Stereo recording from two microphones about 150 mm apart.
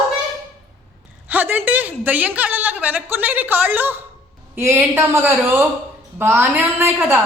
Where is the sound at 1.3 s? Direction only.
10° right (ahead or behind).